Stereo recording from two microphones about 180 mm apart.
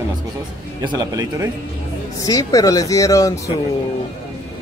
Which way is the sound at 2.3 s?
20° left (ahead or behind).